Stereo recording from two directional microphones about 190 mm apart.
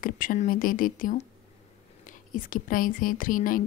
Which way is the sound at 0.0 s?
45° left (ahead or behind).